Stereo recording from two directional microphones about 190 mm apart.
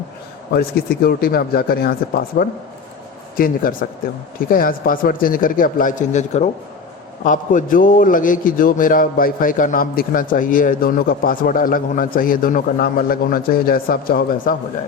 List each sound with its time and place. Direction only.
0.5 s a man's voice: 55° left (ahead or behind)